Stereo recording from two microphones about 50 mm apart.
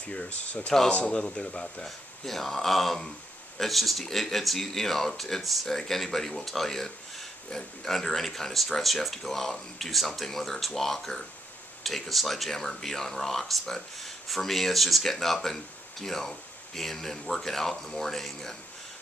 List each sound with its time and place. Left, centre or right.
0.0 s speech: left
2.2 s speech: centre